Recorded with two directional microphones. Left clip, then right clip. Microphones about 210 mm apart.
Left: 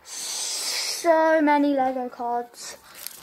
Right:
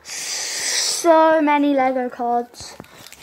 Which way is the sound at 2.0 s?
30° right (ahead or behind).